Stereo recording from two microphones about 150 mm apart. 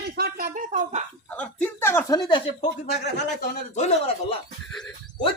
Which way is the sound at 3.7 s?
45° left (ahead or behind).